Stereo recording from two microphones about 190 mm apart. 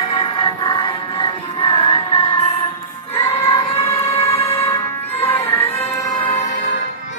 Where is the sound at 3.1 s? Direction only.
10° left (ahead or behind).